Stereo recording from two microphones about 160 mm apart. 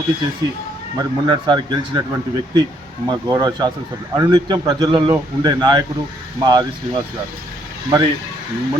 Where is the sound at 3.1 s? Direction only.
25° right (ahead or behind).